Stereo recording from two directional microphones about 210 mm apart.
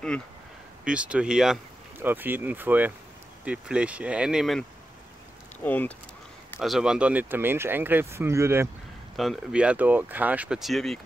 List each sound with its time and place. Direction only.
0.8 s speech: 5° right (ahead or behind)
9.1 s speech: centre (ahead or behind)